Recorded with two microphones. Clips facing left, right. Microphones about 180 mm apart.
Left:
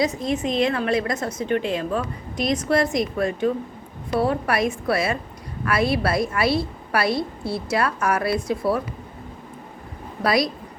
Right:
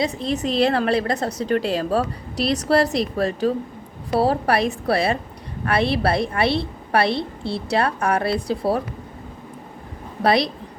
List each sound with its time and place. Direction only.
0.2 s a woman's voice: 35° right (ahead or behind)
10.2 s a woman's voice: 30° right (ahead or behind)